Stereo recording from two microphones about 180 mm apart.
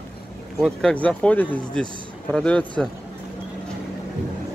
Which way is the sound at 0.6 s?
5° left (ahead or behind).